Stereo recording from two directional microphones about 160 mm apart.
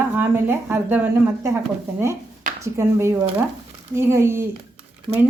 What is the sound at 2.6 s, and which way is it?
Speech, 20° right (ahead or behind).